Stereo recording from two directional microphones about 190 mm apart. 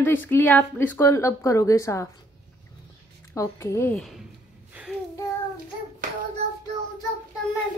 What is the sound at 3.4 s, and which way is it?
Speech, 15° left (ahead or behind).